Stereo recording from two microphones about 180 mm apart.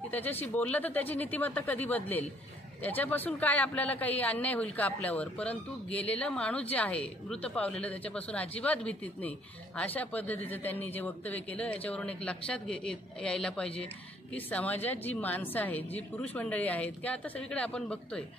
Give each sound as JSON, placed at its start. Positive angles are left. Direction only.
{"t": 0.1, "sound": "a man's voice", "side_deg": 10}